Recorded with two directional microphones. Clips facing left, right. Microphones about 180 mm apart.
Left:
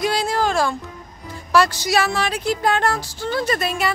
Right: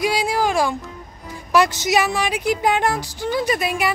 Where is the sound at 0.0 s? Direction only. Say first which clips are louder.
Right 1 dB; 10° right (ahead or behind).